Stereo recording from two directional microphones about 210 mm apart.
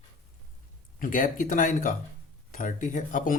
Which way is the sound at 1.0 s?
40° left (ahead or behind).